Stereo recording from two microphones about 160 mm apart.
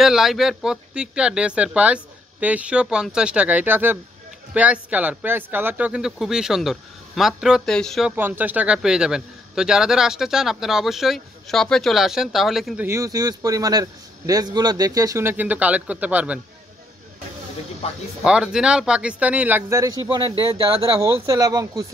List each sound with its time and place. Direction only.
0.0 s a man's voice: centre (ahead or behind)
8.2 s a man's voice: 10° right (ahead or behind)
12.8 s a man's voice: 20° right (ahead or behind)
18.2 s a man's voice: 5° right (ahead or behind); by 21.8 s 20° right (ahead or behind)